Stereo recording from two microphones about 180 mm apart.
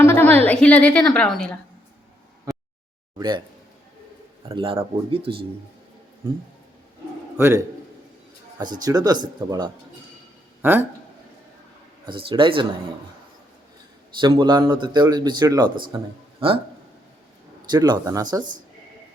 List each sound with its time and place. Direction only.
0.0 s a sound: 10° left (ahead or behind)
3.2 s a man's voice: 25° right (ahead or behind)
4.4 s a man's voice: 30° right (ahead or behind)
7.3 s a man's voice: 15° right (ahead or behind)
10.6 s speech: 10° right (ahead or behind)
12.0 s a man's voice: 30° right (ahead or behind)
14.2 s a man's voice: 25° right (ahead or behind)
17.7 s a man's voice: 25° right (ahead or behind)